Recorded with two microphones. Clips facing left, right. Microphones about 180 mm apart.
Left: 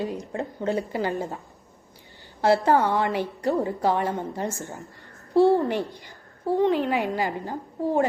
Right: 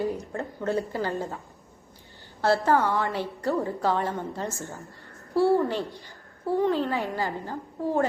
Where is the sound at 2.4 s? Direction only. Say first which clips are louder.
Left 3 dB; 15° left (ahead or behind).